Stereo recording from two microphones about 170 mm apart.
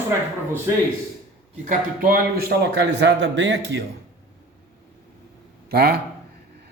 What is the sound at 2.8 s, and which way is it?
A man's voice, 90° right.